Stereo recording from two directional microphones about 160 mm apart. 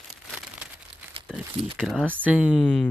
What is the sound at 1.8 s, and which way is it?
Speech, 5° left (ahead or behind).